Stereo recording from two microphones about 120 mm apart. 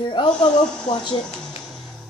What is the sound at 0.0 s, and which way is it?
Speech, 40° left (ahead or behind).